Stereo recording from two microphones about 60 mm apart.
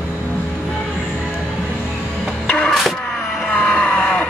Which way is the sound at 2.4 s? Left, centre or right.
Centre.